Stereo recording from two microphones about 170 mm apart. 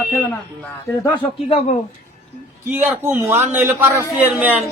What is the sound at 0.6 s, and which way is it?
Speech, 20° left (ahead or behind).